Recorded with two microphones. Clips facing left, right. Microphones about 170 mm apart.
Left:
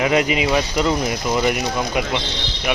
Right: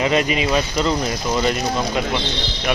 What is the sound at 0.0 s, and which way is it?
Speech, 15° left (ahead or behind).